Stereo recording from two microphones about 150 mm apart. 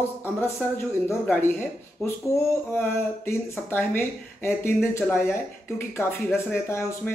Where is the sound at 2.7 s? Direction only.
15° left (ahead or behind).